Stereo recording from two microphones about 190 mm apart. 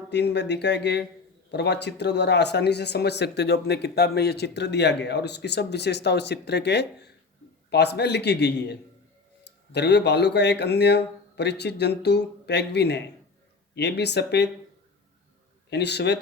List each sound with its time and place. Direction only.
0.1 s speech: 65° left (ahead or behind)
15.7 s speech: 60° left (ahead or behind)